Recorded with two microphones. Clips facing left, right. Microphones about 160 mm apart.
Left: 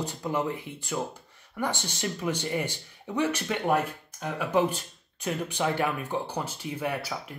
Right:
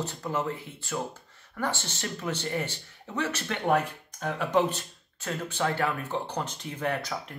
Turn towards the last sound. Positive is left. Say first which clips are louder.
# even
turn(degrees=10)  # may be behind; listen again after turning